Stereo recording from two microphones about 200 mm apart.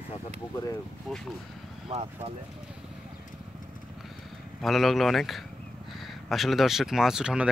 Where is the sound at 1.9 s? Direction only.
30° right (ahead or behind).